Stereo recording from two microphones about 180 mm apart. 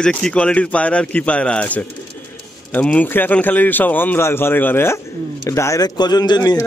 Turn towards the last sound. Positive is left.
turn(degrees=20)  # may be behind; listen again after turning